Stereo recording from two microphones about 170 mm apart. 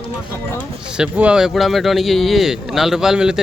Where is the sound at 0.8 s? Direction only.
5° right (ahead or behind).